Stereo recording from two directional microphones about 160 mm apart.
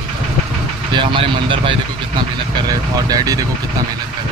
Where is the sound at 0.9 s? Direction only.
30° right (ahead or behind).